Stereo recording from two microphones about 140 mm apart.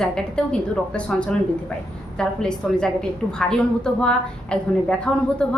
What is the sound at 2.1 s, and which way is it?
A woman's voice, 5° left (ahead or behind).